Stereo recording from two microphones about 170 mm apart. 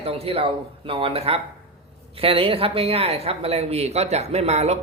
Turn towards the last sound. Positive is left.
turn(degrees=-40)  # may be behind; listen again after turning